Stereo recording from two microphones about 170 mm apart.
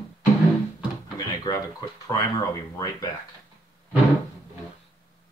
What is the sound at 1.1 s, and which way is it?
Speech, 20° left (ahead or behind).